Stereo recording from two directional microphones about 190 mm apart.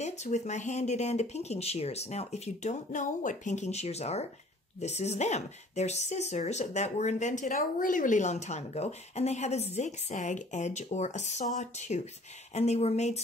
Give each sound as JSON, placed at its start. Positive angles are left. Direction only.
{"t": 0.0, "sound": "speech", "side_deg": 35}